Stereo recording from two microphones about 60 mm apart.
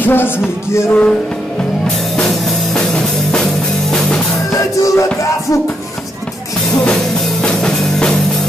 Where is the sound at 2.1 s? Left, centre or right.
Centre.